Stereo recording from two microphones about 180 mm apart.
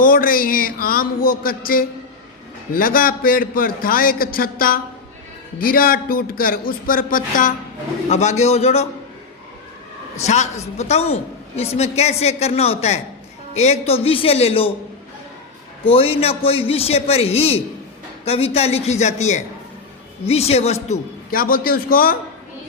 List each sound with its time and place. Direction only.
0.0 s a man's voice: 50° left (ahead or behind)
8.1 s a woman's voice: 40° left (ahead or behind)
10.2 s a woman's voice: 40° left (ahead or behind)
15.8 s a woman's voice: 30° left (ahead or behind)
21.2 s a man's voice: 55° left (ahead or behind)